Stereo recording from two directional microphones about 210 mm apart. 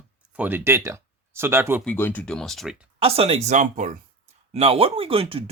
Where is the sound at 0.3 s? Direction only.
10° right (ahead or behind).